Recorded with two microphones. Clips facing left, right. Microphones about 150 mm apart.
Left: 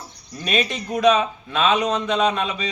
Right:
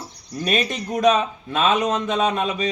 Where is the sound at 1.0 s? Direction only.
45° right (ahead or behind).